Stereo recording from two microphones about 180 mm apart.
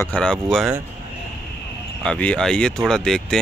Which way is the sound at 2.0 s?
5° left (ahead or behind).